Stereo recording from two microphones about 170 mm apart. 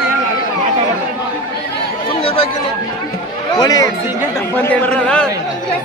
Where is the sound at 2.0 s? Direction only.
35° left (ahead or behind).